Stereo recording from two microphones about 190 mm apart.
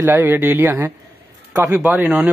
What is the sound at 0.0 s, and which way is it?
Speech, 10° right (ahead or behind).